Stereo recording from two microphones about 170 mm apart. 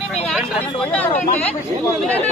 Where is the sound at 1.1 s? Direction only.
45° left (ahead or behind).